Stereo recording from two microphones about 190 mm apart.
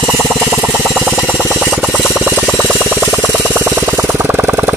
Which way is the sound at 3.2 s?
10° right (ahead or behind).